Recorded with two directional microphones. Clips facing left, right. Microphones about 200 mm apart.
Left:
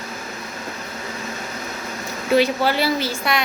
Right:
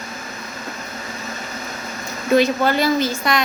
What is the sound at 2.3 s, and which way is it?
A woman's voice, 10° left (ahead or behind).